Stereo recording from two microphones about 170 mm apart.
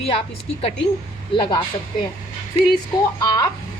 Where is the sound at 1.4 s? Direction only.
25° left (ahead or behind).